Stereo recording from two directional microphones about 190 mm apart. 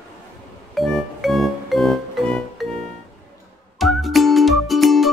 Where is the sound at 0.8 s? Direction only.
Centre (ahead or behind).